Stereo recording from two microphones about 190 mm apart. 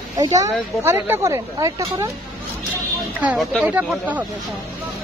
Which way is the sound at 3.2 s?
5° right (ahead or behind).